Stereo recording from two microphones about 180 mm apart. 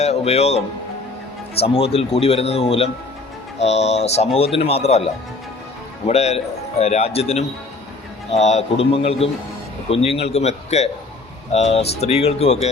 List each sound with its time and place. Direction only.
0.0 s speech: 35° left (ahead or behind)
1.6 s speech: 35° left (ahead or behind)